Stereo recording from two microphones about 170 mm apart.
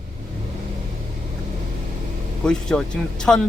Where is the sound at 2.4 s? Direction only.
5° left (ahead or behind).